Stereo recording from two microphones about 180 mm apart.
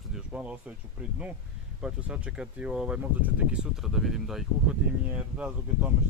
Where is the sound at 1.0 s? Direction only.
10° right (ahead or behind).